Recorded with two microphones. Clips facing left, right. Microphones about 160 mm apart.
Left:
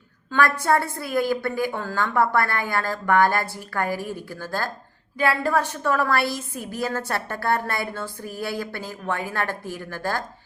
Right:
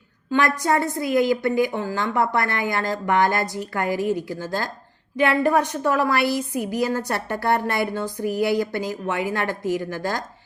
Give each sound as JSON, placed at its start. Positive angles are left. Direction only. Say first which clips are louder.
{"t": 0.3, "sound": "a woman's voice", "louder": "even", "side_deg": -15}